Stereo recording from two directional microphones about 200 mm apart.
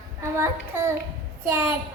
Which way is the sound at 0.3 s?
15° right (ahead or behind).